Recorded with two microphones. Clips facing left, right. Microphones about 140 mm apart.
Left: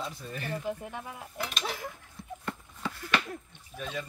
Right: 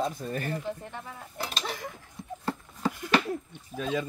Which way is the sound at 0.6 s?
10° left (ahead or behind).